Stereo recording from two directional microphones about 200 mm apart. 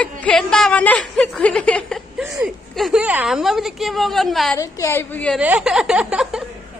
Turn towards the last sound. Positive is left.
turn(degrees=-5)  # may be behind; listen again after turning